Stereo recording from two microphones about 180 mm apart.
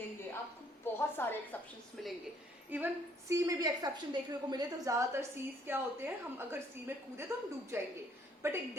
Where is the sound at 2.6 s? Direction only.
10° right (ahead or behind).